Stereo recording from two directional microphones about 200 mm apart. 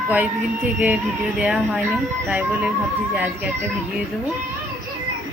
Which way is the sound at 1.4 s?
5° right (ahead or behind).